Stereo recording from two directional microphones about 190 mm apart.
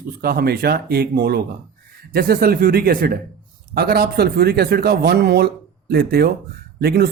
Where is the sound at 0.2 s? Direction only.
55° right (ahead or behind).